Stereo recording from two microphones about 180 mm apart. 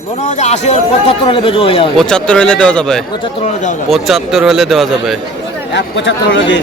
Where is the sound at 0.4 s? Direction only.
40° left (ahead or behind).